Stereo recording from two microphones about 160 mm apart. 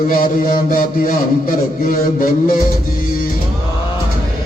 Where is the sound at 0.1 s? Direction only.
60° left (ahead or behind).